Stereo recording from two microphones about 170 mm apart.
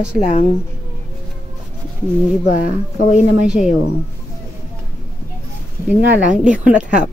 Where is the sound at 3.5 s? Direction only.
5° right (ahead or behind).